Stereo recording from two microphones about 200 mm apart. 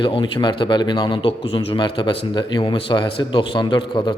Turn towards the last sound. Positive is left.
turn(degrees=25)  # may be behind; listen again after turning